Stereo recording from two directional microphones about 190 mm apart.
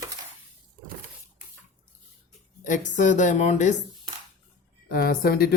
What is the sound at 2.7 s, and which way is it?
A woman's voice, 40° left (ahead or behind).